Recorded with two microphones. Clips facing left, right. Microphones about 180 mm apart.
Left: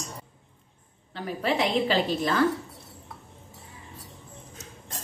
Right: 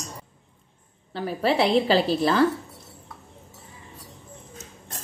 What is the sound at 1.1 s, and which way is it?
A woman's voice, 35° right (ahead or behind).